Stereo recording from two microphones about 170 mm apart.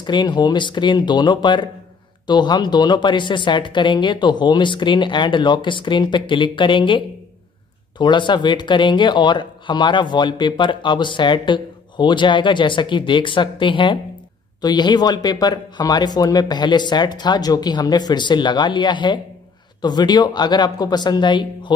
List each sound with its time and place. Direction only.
0.0 s speech: 25° left (ahead or behind)
8.0 s speech: 25° left (ahead or behind)